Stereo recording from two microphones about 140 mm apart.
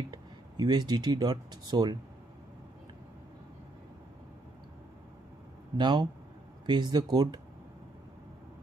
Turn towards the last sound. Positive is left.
turn(degrees=-30)  # may be behind; listen again after turning